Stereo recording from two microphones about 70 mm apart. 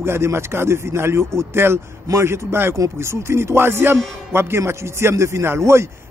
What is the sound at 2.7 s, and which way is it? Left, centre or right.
A man's voice, right.